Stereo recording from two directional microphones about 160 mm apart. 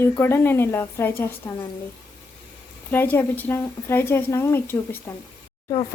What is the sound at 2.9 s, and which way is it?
Speech, 10° left (ahead or behind).